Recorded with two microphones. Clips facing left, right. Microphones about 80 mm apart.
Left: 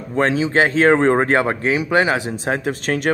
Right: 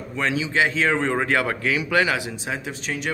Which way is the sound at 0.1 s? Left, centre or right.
Left.